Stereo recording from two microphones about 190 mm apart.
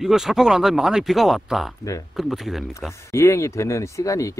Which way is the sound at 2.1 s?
Centre (ahead or behind).